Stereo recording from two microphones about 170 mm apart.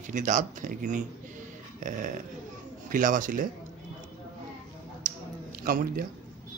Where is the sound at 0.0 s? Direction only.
45° right (ahead or behind).